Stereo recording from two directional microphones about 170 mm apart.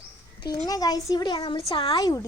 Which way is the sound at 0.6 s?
20° left (ahead or behind).